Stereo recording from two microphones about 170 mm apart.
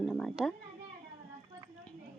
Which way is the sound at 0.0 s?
Centre (ahead or behind).